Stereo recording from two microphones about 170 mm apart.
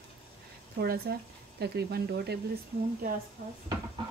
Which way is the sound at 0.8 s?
70° right (ahead or behind).